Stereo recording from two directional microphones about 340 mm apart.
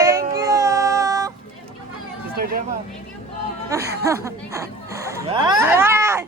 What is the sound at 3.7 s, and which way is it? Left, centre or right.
Speech, centre.